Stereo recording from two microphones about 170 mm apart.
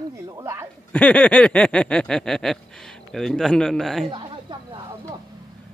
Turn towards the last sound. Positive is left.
turn(degrees=-25)  # may be behind; listen again after turning